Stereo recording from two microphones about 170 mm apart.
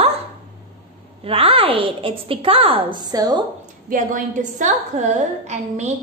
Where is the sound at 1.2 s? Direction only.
35° right (ahead or behind).